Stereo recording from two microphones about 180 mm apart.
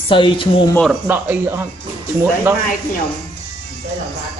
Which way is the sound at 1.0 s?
10° right (ahead or behind).